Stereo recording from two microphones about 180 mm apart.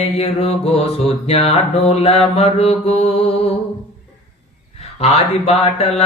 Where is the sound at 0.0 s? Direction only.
35° left (ahead or behind).